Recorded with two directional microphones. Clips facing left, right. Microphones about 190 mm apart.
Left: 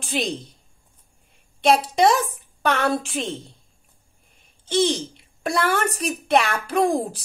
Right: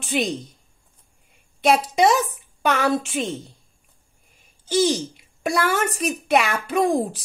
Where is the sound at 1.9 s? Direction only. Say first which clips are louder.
Even; 5° right (ahead or behind).